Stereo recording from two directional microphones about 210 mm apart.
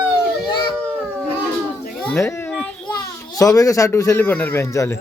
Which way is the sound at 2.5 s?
5° left (ahead or behind).